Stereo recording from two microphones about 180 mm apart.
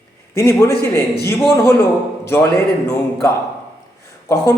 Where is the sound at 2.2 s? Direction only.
15° left (ahead or behind).